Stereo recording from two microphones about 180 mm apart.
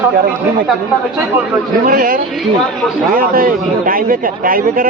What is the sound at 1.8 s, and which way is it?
Speech, 55° right (ahead or behind).